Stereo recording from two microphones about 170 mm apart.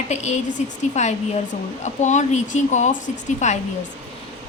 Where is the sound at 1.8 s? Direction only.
45° left (ahead or behind).